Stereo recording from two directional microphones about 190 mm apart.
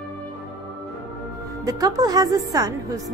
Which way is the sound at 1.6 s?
20° right (ahead or behind).